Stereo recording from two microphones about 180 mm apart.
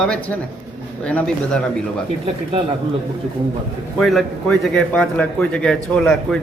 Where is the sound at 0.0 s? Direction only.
5° left (ahead or behind).